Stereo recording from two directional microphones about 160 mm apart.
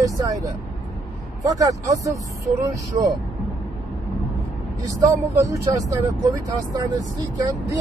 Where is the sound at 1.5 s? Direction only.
20° right (ahead or behind).